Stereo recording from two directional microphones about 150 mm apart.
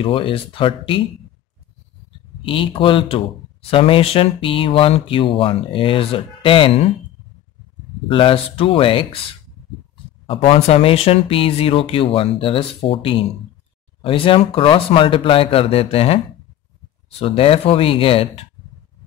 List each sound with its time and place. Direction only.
0.0 s speech: 35° left (ahead or behind)
2.4 s speech: 35° left (ahead or behind)
8.1 s speech: 35° left (ahead or behind)
10.2 s speech: 40° left (ahead or behind)
17.2 s speech: 40° left (ahead or behind)